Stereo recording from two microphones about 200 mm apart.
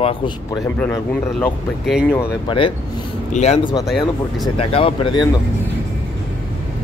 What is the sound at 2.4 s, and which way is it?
Speech, 25° left (ahead or behind).